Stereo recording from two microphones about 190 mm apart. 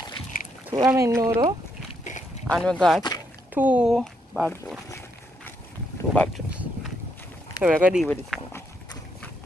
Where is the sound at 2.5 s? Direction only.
5° left (ahead or behind).